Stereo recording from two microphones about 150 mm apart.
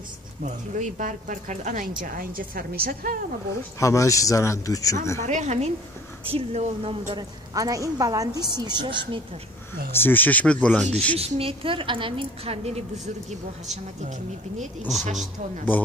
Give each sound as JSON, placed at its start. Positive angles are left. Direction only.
{"t": 0.7, "sound": "a woman's voice", "side_deg": -60}
{"t": 3.8, "sound": "speech", "side_deg": 20}
{"t": 5.2, "sound": "a woman's voice", "side_deg": -50}
{"t": 7.2, "sound": "a woman's voice", "side_deg": -25}
{"t": 9.9, "sound": "speech", "side_deg": 15}
{"t": 11.1, "sound": "a woman's voice", "side_deg": -40}
{"t": 14.8, "sound": "a woman's voice", "side_deg": 0}